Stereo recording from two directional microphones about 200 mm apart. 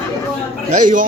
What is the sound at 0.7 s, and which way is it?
Speech, 40° right (ahead or behind).